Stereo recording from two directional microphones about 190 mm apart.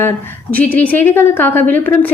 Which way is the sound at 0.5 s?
10° left (ahead or behind).